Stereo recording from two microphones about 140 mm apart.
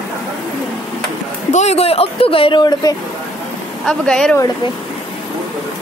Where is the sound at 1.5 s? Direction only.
50° left (ahead or behind); by 2.9 s 30° left (ahead or behind).